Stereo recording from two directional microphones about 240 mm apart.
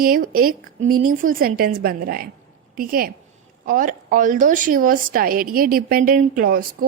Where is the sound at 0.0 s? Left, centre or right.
Right.